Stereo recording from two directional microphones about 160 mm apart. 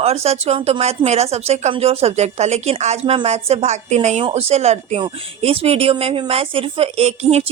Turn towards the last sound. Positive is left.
turn(degrees=-40)  # may be behind; listen again after turning